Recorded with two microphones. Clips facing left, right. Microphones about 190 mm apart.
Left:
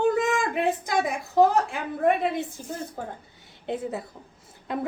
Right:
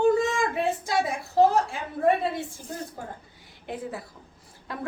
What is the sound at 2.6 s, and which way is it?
A woman's voice, 20° left (ahead or behind).